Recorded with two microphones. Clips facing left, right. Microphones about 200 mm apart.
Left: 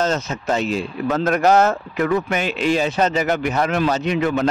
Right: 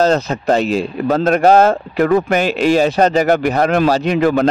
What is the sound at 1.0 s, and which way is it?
Speech, 30° right (ahead or behind).